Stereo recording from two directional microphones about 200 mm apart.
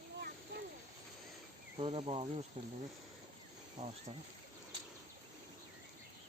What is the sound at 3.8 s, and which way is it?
Speech, 35° right (ahead or behind).